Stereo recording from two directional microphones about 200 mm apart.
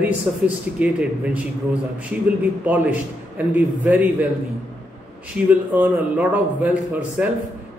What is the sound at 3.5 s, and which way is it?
Speech, 40° left (ahead or behind).